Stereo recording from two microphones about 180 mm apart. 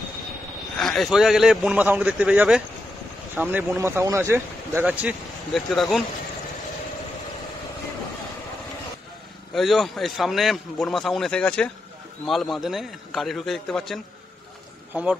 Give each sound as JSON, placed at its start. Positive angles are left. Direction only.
{"t": 0.7, "sound": "a man's voice", "side_deg": 0}
{"t": 5.5, "sound": "a man's voice", "side_deg": 0}
{"t": 9.5, "sound": "a man's voice", "side_deg": 0}